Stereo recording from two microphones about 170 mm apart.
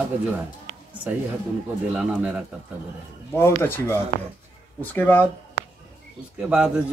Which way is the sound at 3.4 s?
15° left (ahead or behind).